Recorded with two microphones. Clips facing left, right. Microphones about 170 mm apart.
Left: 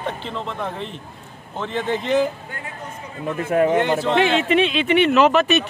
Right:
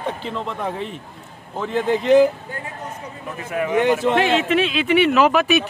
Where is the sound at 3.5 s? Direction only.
35° left (ahead or behind).